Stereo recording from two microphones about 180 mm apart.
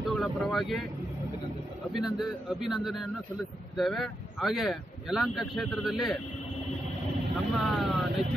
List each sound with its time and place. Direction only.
0.0 s speech: centre (ahead or behind)
1.9 s speech: centre (ahead or behind)
7.5 s speech: centre (ahead or behind)